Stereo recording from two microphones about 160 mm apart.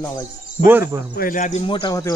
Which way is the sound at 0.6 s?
15° right (ahead or behind).